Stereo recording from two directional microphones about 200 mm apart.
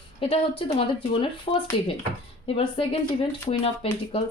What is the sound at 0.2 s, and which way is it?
Speech, 30° left (ahead or behind).